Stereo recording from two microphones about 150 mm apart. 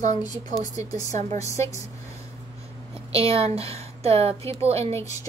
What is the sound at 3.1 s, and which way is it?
A woman's voice, 40° right (ahead or behind).